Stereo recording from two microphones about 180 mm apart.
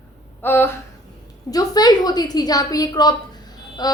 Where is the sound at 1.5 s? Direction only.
20° left (ahead or behind).